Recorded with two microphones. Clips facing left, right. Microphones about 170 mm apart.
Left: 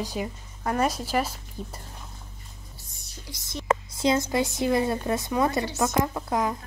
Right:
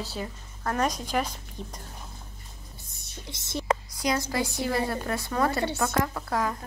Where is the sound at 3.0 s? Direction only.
25° right (ahead or behind).